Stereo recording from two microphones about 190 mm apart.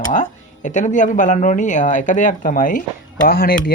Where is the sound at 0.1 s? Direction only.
40° left (ahead or behind).